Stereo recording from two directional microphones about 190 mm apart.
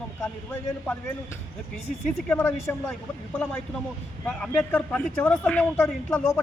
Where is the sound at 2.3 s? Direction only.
10° left (ahead or behind).